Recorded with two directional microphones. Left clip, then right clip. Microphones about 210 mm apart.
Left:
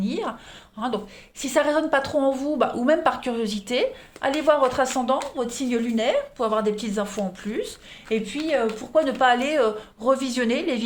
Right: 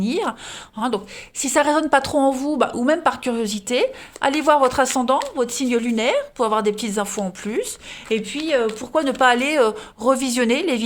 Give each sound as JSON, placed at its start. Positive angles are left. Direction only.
{"t": 0.0, "sound": "a woman's voice", "side_deg": -45}
{"t": 8.1, "sound": "a woman's voice", "side_deg": -50}